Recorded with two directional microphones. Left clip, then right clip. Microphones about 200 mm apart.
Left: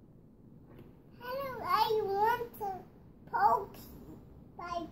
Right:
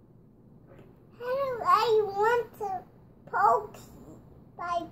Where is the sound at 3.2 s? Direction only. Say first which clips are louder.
Right 4 dB; 10° right (ahead or behind).